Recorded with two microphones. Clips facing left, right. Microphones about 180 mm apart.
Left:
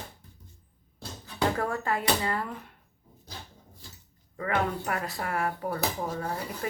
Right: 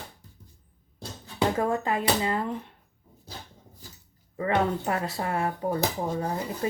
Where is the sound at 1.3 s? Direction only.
20° right (ahead or behind).